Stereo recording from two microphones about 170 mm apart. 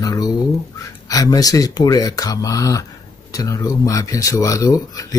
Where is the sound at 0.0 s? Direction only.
20° left (ahead or behind).